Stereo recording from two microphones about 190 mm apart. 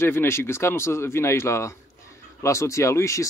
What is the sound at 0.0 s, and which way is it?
Speech, 10° left (ahead or behind).